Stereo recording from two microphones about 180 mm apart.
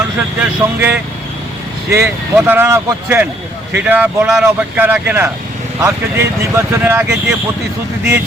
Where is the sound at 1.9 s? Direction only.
15° right (ahead or behind).